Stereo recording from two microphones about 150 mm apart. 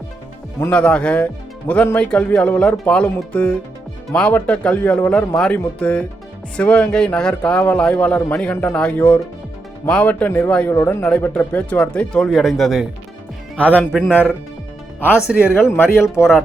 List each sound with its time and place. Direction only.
0.6 s speech: 5° left (ahead or behind)
13.6 s speech: 10° left (ahead or behind)